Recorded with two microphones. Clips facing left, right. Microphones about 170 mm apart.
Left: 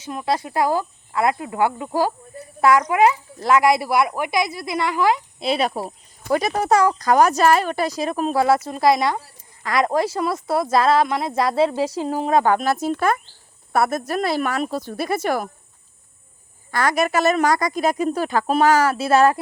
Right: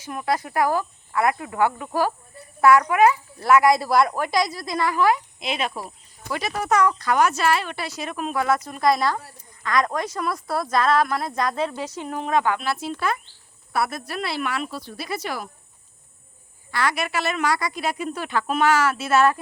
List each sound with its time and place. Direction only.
0.0 s a woman's voice: 20° left (ahead or behind)
5.4 s a woman's voice: 35° left (ahead or behind)
16.7 s speech: 45° left (ahead or behind)